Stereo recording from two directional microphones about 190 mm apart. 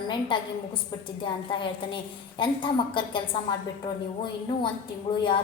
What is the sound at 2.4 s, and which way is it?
Speech, 25° left (ahead or behind).